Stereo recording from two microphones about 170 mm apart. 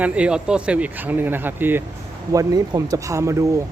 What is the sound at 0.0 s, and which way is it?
A man's voice, 5° right (ahead or behind).